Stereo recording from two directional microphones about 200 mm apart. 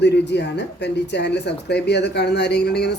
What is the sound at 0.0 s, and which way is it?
Speech, 60° left (ahead or behind).